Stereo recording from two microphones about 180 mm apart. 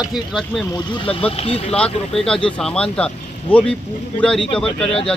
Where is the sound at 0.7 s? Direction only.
30° left (ahead or behind).